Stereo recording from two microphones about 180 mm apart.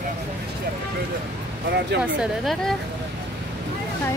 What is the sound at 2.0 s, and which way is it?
Speech, 5° right (ahead or behind).